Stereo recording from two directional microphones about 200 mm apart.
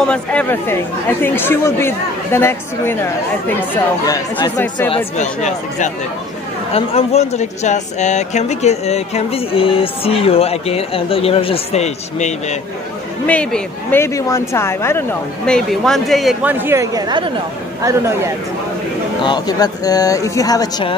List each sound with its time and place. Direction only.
0.0 s speech: 5° left (ahead or behind)
4.8 s speech: 30° left (ahead or behind)
13.3 s speech: 5° left (ahead or behind); by 18.3 s 15° right (ahead or behind)
19.2 s a woman's voice: 20° left (ahead or behind)